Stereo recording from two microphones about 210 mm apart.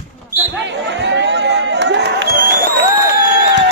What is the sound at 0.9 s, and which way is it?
Crowd, 55° right (ahead or behind).